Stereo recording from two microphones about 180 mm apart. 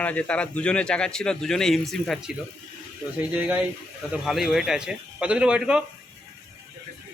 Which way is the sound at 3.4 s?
5° right (ahead or behind).